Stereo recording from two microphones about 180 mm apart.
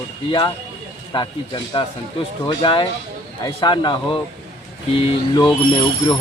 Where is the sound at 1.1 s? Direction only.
25° left (ahead or behind).